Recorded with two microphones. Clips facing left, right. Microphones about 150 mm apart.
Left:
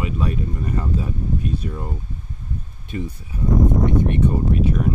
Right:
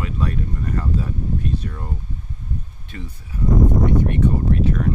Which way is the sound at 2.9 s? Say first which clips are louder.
Left 9 dB; 15° left (ahead or behind).